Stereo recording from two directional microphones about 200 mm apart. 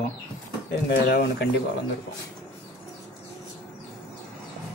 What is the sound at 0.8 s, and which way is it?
Speech, 50° left (ahead or behind).